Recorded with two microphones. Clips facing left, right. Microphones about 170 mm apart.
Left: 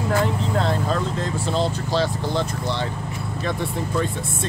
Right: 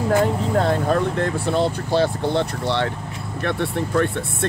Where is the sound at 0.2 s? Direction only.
50° right (ahead or behind).